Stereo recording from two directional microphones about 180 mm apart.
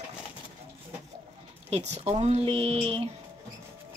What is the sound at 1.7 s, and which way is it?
Speech, 35° right (ahead or behind).